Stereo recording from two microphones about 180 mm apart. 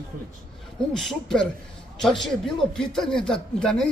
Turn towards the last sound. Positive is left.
turn(degrees=5)  # may be behind; listen again after turning